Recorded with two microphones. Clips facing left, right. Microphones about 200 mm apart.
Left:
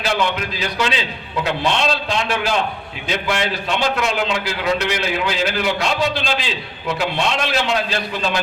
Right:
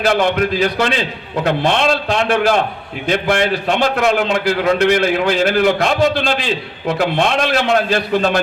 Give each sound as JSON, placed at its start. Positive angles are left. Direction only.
{"t": 0.0, "sound": "a man's voice", "side_deg": -55}